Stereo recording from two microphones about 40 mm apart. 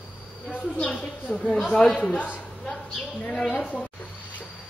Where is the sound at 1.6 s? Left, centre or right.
Left.